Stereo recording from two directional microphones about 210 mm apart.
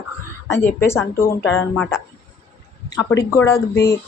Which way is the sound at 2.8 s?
15° left (ahead or behind).